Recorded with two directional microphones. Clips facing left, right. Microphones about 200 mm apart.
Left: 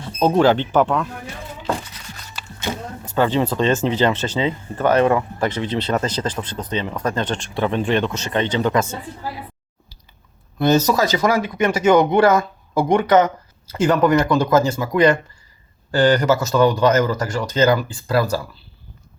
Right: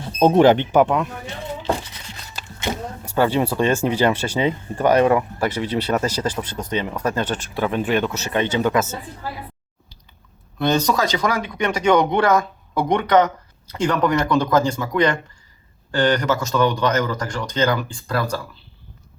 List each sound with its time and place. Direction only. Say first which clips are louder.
0.2 s speech: right 2 dB; 20° right (ahead or behind)
3.0 s speech: even; 10° right (ahead or behind)
10.6 s speech: left 3 dB; 5° left (ahead or behind)